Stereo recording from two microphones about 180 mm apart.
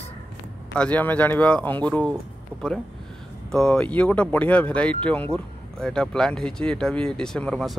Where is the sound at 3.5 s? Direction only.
5° left (ahead or behind).